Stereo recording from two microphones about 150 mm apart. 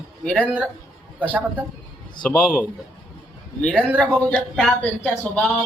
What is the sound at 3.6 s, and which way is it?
Speech, 5° left (ahead or behind).